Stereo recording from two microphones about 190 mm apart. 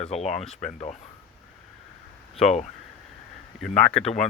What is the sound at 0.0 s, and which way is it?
Speech, 35° left (ahead or behind).